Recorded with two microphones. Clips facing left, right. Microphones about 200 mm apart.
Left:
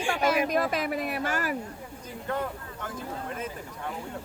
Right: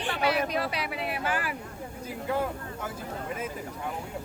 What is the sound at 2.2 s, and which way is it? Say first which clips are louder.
Speech: right 2 dB; 10° right (ahead or behind).